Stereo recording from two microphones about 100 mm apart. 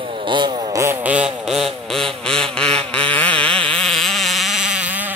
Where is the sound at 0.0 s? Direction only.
55° right (ahead or behind); by 0.8 s 40° right (ahead or behind).